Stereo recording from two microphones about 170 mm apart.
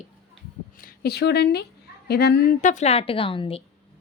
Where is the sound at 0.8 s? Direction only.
65° left (ahead or behind).